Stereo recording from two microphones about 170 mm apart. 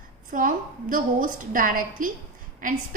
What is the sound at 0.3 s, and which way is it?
A woman's voice, 50° right (ahead or behind).